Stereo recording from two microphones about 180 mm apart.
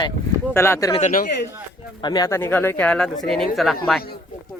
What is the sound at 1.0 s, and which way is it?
Speech, 45° left (ahead or behind).